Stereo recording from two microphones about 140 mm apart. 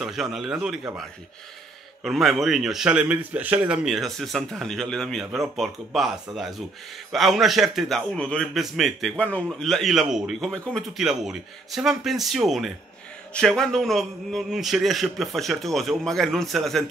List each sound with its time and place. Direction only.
0.0 s a man's voice: centre (ahead or behind)
2.0 s a man's voice: centre (ahead or behind)